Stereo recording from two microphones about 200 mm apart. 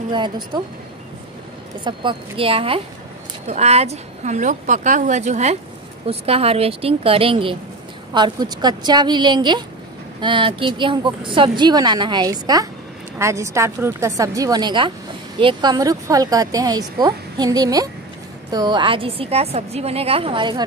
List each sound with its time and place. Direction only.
1.9 s a woman's voice: 25° right (ahead or behind)